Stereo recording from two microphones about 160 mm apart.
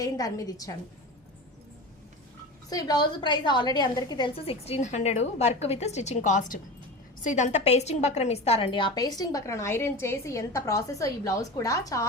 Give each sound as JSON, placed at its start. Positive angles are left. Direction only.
{"t": 0.0, "sound": "a woman's voice", "side_deg": 20}
{"t": 2.6, "sound": "a woman's voice", "side_deg": 25}